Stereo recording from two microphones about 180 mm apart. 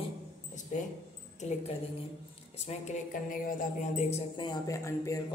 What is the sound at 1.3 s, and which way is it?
A woman's voice, 40° left (ahead or behind).